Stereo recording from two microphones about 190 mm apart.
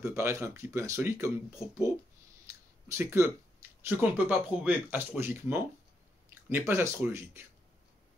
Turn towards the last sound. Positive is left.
turn(degrees=-15)  # may be behind; listen again after turning